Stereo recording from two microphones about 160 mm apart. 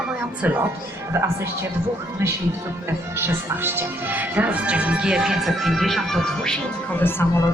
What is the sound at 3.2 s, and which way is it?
Speech, 15° right (ahead or behind).